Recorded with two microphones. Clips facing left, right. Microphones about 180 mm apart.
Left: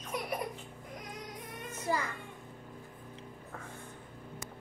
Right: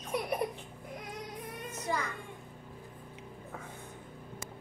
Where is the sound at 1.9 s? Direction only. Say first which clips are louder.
Left 1 dB; centre (ahead or behind).